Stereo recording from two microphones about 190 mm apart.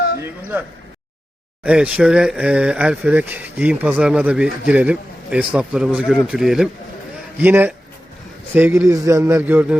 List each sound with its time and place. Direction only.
0.5 s a man's voice: 10° right (ahead or behind)